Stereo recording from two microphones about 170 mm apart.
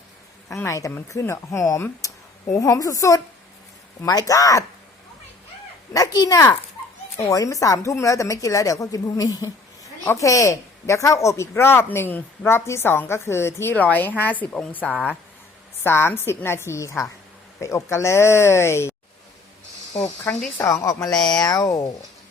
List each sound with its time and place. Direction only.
0.4 s a woman's voice: 15° left (ahead or behind)
5.9 s a child's voice: 20° left (ahead or behind)